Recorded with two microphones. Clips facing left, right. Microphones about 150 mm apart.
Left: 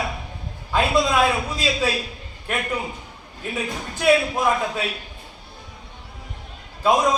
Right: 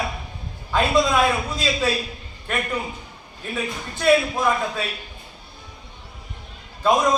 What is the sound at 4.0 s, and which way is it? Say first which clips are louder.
Speech: even; 15° left (ahead or behind).